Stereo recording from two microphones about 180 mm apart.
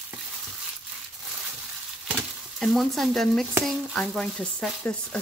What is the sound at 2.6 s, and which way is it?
Speech, centre (ahead or behind).